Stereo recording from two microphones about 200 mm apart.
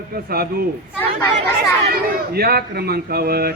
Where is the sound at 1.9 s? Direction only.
50° right (ahead or behind).